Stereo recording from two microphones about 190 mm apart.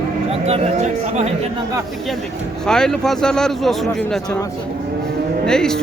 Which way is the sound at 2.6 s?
5° left (ahead or behind).